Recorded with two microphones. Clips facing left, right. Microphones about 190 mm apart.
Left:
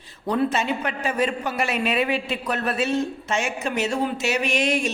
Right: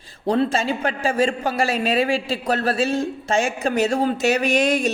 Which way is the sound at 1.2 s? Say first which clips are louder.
Right 3 dB; 30° right (ahead or behind).